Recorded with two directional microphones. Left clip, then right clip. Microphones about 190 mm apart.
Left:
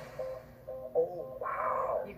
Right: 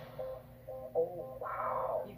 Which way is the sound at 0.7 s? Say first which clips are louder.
Left 3 dB; 30° left (ahead or behind).